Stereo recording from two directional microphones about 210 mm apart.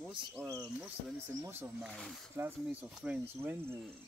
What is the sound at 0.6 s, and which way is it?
Speech, centre (ahead or behind).